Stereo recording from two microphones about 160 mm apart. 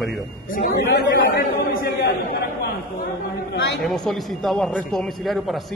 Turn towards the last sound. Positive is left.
turn(degrees=0)  # may be behind; listen again after turning